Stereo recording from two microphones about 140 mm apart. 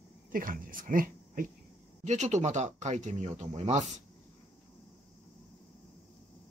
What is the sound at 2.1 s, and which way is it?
Speech, 60° right (ahead or behind).